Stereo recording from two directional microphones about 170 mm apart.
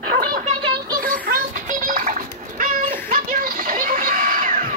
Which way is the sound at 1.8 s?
50° right (ahead or behind).